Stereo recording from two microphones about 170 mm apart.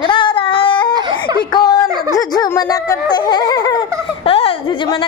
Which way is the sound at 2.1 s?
20° left (ahead or behind).